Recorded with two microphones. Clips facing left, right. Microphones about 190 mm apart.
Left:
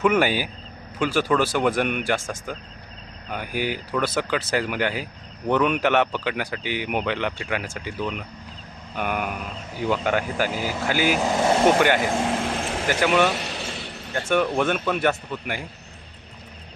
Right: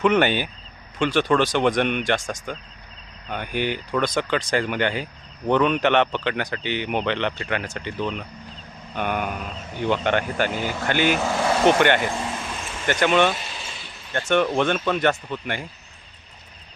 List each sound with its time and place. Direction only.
0.0 s speech: 5° left (ahead or behind)
12.1 s vehicle: 65° left (ahead or behind)
12.9 s speech: 5° left (ahead or behind)
13.3 s a sound: 70° left (ahead or behind)
14.1 s speech: 5° left (ahead or behind)